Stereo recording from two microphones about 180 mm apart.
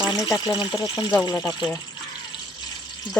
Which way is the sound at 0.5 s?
25° left (ahead or behind).